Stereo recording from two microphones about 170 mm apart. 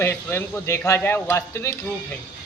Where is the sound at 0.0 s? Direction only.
15° left (ahead or behind).